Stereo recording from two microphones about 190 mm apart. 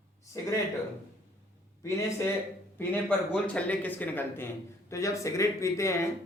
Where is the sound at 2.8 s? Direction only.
10° left (ahead or behind).